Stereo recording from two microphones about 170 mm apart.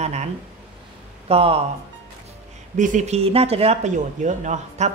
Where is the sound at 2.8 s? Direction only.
45° right (ahead or behind).